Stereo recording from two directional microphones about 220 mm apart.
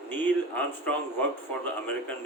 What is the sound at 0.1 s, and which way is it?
Speech, 5° left (ahead or behind).